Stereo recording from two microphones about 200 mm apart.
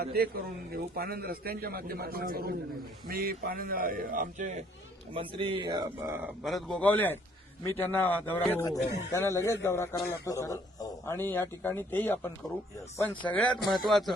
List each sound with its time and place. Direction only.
0.0 s a man's voice: 50° right (ahead or behind)
5.1 s speech: 25° right (ahead or behind)
6.4 s a man's voice: centre (ahead or behind)
13.3 s speech: 5° left (ahead or behind)